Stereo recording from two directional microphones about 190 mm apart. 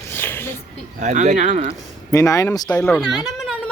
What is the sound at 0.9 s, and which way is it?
Speech, 40° right (ahead or behind).